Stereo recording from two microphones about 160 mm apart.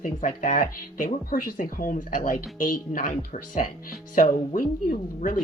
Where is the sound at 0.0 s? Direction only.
55° left (ahead or behind).